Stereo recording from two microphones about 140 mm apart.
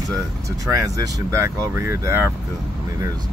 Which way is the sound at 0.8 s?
25° right (ahead or behind).